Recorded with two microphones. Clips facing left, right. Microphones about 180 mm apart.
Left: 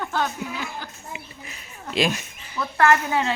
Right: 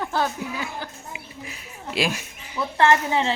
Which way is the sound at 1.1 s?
5° right (ahead or behind).